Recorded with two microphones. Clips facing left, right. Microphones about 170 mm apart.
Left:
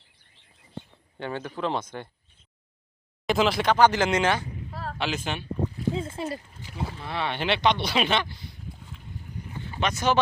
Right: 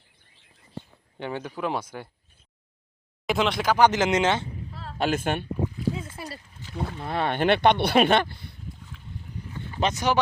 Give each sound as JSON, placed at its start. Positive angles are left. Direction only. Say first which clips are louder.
{"t": 1.2, "sound": "speech", "louder": "even", "side_deg": -15}
{"t": 3.2, "sound": "speech", "louder": "left 1 dB", "side_deg": 0}
{"t": 3.8, "sound": "speech", "louder": "right 2 dB", "side_deg": -20}
{"t": 4.7, "sound": "a sound", "louder": "left 5 dB", "side_deg": 45}
{"t": 4.9, "sound": "speech", "louder": "right 6 dB", "side_deg": -50}
{"t": 5.9, "sound": "speech", "louder": "left 5 dB", "side_deg": 25}
{"t": 7.0, "sound": "speech", "louder": "right 6 dB", "side_deg": -50}
{"t": 9.9, "sound": "speech", "louder": "left 3 dB", "side_deg": -15}